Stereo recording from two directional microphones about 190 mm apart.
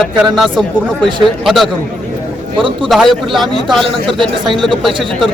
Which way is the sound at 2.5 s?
25° right (ahead or behind).